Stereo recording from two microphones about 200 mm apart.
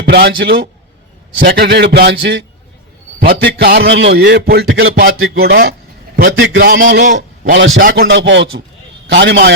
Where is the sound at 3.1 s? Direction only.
55° right (ahead or behind).